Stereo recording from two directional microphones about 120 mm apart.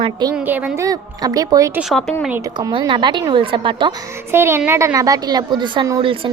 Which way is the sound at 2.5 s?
35° right (ahead or behind).